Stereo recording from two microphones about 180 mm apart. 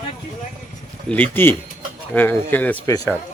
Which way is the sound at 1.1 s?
10° left (ahead or behind).